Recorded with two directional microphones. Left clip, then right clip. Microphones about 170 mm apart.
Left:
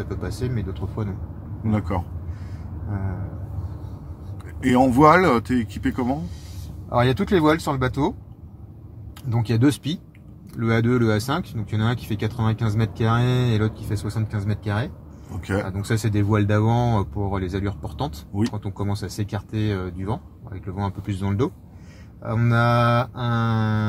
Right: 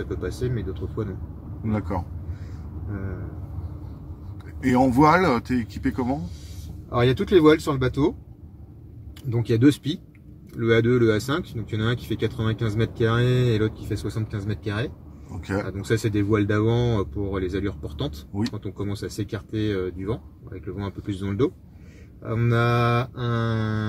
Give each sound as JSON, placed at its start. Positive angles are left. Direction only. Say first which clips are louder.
{"t": 0.0, "sound": "speech", "louder": "right 1 dB", "side_deg": 40}
{"t": 1.7, "sound": "speech", "louder": "left 2 dB", "side_deg": 0}
{"t": 4.6, "sound": "speech", "louder": "left 2 dB", "side_deg": 0}
{"t": 6.9, "sound": "speech", "louder": "even", "side_deg": 40}
{"t": 9.3, "sound": "speech", "louder": "right 2 dB", "side_deg": 40}
{"t": 15.9, "sound": "speech", "louder": "right 2 dB", "side_deg": 45}